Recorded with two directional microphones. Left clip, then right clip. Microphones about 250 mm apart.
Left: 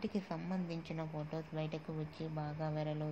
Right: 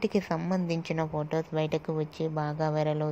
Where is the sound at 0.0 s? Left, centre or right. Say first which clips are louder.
Right 13 dB; right.